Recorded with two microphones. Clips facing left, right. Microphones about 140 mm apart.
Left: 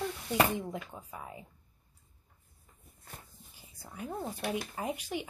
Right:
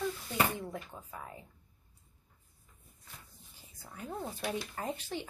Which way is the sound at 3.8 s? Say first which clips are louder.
Left 2 dB; 15° left (ahead or behind).